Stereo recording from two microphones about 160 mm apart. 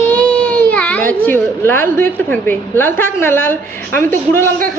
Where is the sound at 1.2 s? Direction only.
15° left (ahead or behind).